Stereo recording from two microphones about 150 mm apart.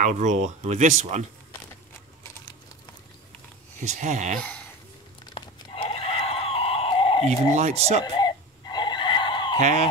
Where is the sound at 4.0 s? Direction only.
55° right (ahead or behind).